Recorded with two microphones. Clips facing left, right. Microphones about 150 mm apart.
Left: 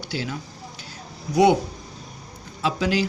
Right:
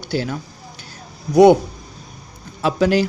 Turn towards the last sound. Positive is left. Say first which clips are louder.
# right 6 dB
turn(degrees=-50)  # may be behind; listen again after turning